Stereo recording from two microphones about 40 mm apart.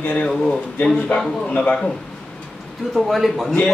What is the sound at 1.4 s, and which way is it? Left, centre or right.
Speech, left.